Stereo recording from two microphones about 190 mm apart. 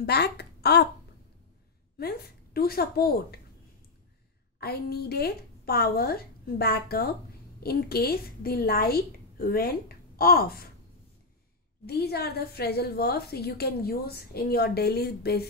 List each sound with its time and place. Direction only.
0.0 s a woman's voice: 60° left (ahead or behind)
2.0 s a woman's voice: 55° left (ahead or behind)
4.6 s a woman's voice: 55° left (ahead or behind)
11.8 s a woman's voice: 55° left (ahead or behind)